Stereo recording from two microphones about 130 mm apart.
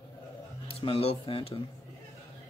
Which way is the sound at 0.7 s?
45° left (ahead or behind).